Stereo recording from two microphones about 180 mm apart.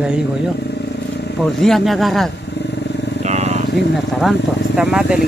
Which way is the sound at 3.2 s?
35° right (ahead or behind).